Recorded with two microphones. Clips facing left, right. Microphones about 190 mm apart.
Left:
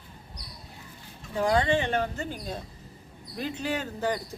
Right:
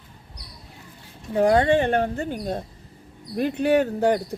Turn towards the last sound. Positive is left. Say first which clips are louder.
# right 10 dB
turn(degrees=-65)  # may be behind; listen again after turning